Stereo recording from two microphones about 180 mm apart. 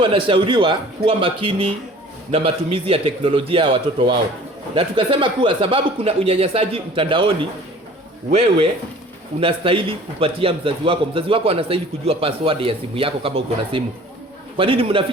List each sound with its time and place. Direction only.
0.0 s a man's voice: 30° right (ahead or behind)